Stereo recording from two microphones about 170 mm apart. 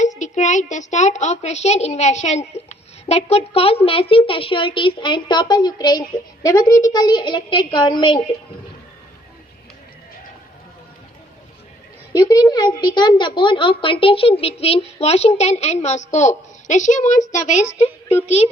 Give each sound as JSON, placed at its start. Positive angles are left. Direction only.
{"t": 0.0, "sound": "a child's voice", "side_deg": 45}
{"t": 12.1, "sound": "a woman's voice", "side_deg": 20}